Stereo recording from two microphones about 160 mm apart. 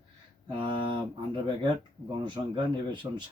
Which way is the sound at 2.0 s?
30° right (ahead or behind).